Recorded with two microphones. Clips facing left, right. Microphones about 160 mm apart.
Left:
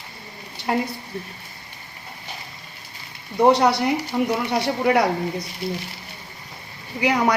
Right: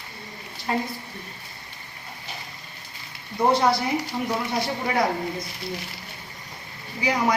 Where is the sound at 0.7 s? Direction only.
65° left (ahead or behind).